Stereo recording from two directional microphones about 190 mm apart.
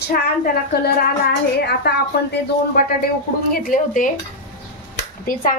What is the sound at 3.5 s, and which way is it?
Speech, 50° left (ahead or behind).